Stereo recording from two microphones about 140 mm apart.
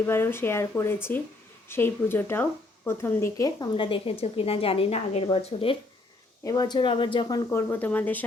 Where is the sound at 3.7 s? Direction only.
40° left (ahead or behind).